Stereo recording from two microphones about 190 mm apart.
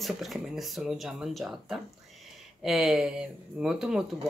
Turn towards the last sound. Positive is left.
turn(degrees=-5)  # may be behind; listen again after turning